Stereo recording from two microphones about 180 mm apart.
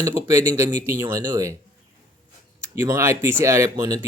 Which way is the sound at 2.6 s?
15° right (ahead or behind).